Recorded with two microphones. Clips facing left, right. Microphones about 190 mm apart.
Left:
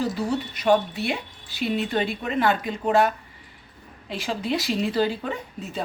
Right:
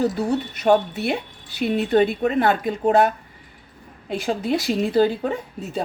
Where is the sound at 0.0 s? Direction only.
55° right (ahead or behind).